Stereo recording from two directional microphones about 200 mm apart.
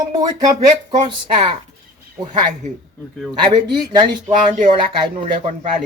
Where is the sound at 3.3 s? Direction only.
20° right (ahead or behind).